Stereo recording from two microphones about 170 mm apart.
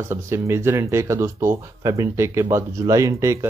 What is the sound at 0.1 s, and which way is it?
Speech, 15° right (ahead or behind).